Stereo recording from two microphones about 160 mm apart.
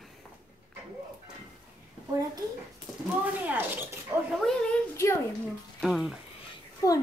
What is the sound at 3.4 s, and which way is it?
Speech, 10° right (ahead or behind).